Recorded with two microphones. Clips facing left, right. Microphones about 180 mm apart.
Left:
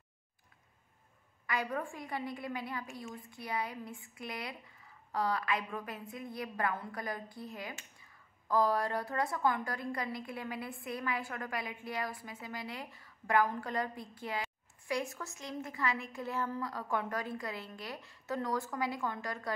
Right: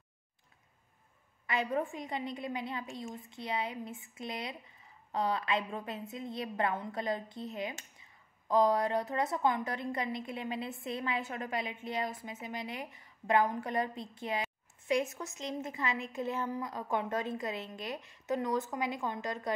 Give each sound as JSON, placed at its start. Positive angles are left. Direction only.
{"t": 1.5, "sound": "a woman's voice", "side_deg": -25}